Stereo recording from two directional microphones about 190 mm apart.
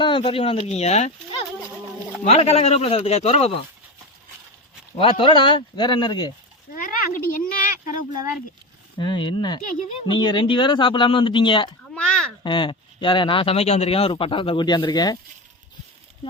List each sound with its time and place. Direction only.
0.0 s speech: 30° left (ahead or behind)
4.9 s speech: 25° left (ahead or behind)
6.7 s a sound: 45° left (ahead or behind)
9.0 s speech: 25° left (ahead or behind)
11.9 s a sound: 5° left (ahead or behind)
12.4 s speech: 25° left (ahead or behind)